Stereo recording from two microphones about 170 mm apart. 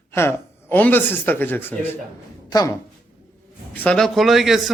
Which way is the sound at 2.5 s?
20° left (ahead or behind).